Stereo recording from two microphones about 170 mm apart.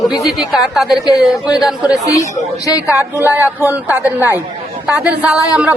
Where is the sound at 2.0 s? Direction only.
20° left (ahead or behind).